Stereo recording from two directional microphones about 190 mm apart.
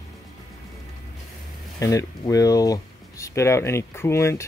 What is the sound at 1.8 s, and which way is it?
Speech, 15° left (ahead or behind).